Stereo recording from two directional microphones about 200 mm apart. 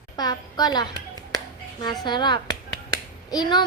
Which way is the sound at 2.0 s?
20° left (ahead or behind).